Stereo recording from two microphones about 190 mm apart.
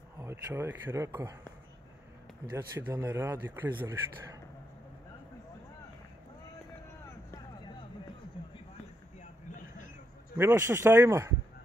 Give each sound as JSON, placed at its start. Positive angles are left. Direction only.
{"t": 0.2, "sound": "speech", "side_deg": -15}
{"t": 2.5, "sound": "speech", "side_deg": -15}
{"t": 8.4, "sound": "a sound", "side_deg": 25}
{"t": 10.3, "sound": "speech", "side_deg": -10}